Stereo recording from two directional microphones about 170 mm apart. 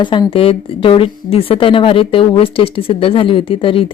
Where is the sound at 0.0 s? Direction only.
30° left (ahead or behind).